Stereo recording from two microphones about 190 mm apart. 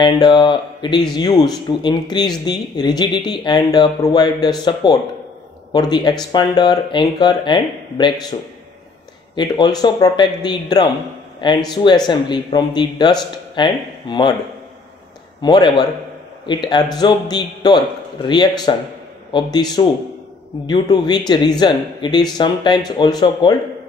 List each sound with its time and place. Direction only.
0.0 s speech: 20° left (ahead or behind)
15.4 s speech: 25° left (ahead or behind)